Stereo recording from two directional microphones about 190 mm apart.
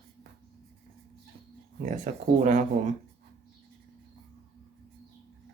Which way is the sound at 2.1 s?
45° right (ahead or behind).